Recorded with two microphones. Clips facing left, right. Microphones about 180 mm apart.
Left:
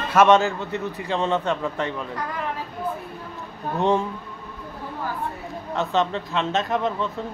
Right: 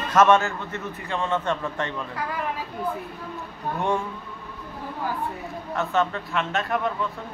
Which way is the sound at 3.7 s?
30° left (ahead or behind).